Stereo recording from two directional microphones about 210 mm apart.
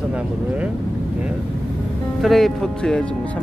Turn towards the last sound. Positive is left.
turn(degrees=5)  # may be behind; listen again after turning